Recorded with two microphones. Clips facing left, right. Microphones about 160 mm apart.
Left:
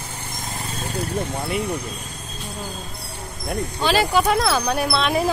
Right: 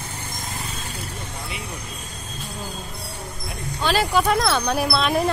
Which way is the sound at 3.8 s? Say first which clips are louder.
Left 1 dB; centre (ahead or behind).